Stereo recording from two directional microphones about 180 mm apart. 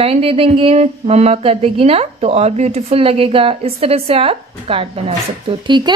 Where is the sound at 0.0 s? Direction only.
30° right (ahead or behind).